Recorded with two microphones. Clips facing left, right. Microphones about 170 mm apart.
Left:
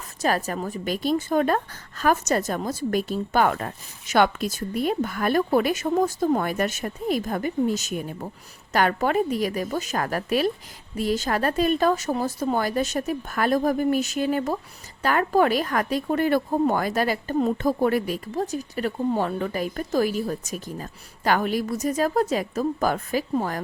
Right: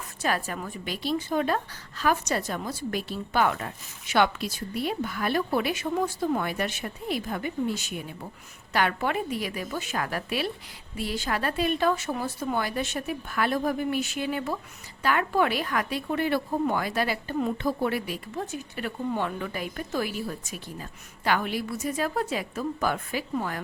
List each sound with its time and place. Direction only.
0.2 s a woman's voice: 40° left (ahead or behind)